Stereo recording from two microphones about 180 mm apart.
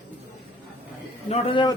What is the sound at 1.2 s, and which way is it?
Speech, 30° left (ahead or behind).